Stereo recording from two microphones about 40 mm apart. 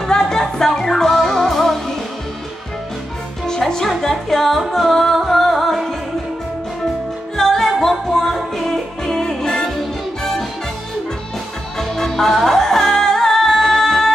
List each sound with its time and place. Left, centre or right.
0.0 s music: centre
3.4 s music: centre
7.3 s music: centre
11.9 s music: centre